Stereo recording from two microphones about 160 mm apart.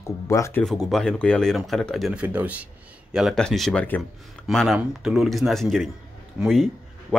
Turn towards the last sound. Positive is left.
turn(degrees=0)  # may be behind; listen again after turning